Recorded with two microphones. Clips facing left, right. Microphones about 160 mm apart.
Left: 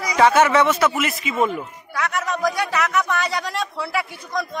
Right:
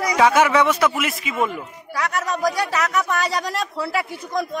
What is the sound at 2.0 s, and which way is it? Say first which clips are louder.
Speech: even; 35° right (ahead or behind).